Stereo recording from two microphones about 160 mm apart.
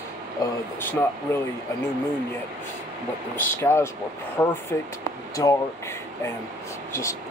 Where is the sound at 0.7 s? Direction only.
15° left (ahead or behind).